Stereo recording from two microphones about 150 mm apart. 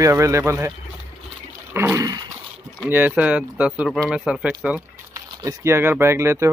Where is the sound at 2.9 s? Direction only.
10° right (ahead or behind).